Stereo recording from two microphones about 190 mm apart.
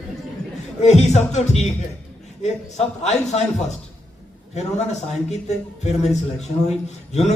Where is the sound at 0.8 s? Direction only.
35° left (ahead or behind).